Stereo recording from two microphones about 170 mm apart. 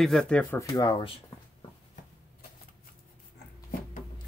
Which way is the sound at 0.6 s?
25° left (ahead or behind).